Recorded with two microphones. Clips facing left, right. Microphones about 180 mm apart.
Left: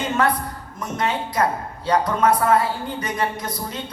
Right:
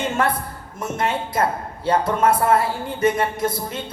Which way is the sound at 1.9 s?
25° right (ahead or behind).